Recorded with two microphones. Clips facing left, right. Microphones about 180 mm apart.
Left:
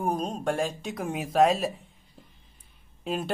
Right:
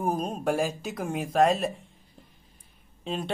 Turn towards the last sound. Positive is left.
turn(degrees=5)  # may be behind; listen again after turning